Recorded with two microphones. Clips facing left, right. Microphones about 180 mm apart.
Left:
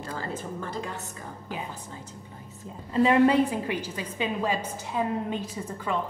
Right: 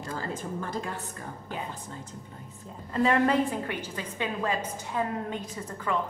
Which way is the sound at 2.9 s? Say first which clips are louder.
Left 4 dB; 15° left (ahead or behind).